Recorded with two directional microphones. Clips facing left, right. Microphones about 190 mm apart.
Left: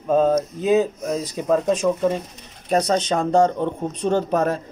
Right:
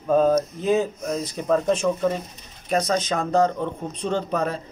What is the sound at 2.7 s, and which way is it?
Speech, 30° left (ahead or behind).